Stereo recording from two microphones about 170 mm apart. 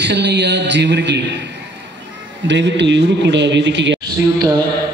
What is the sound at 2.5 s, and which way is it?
Mantra, 90° right.